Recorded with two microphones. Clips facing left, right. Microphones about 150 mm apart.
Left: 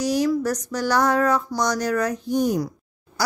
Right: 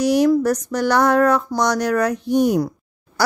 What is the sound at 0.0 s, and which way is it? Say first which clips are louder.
Speech: right 6 dB; 60° right (ahead or behind).